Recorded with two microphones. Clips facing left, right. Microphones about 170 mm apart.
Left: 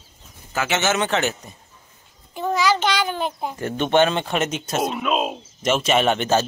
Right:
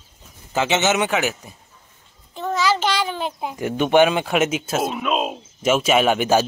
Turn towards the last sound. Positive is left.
turn(degrees=-10)  # may be behind; listen again after turning